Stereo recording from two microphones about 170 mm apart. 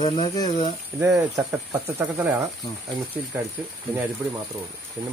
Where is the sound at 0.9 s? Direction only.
15° right (ahead or behind).